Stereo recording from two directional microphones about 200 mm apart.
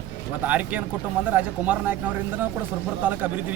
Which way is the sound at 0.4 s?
10° right (ahead or behind).